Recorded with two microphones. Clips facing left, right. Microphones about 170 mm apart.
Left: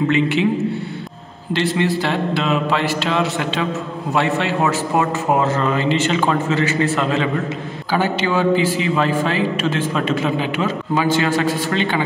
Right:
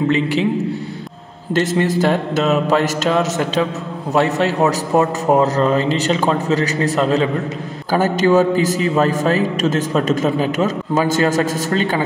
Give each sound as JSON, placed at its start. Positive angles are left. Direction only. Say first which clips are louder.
{"t": 0.1, "sound": "a man's voice", "louder": "even", "side_deg": -35}
{"t": 1.5, "sound": "a man's voice", "louder": "right 2 dB", "side_deg": -45}